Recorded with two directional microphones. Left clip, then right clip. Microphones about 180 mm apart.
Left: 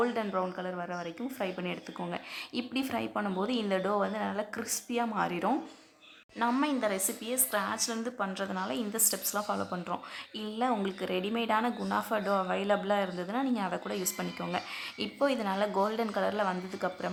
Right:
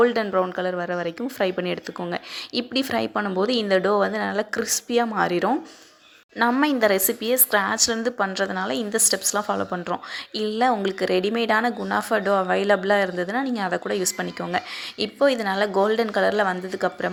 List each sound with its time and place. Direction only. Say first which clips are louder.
0.0 s a woman's voice: right 11 dB; 25° right (ahead or behind)